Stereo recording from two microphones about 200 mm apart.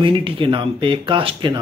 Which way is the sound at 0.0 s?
25° right (ahead or behind).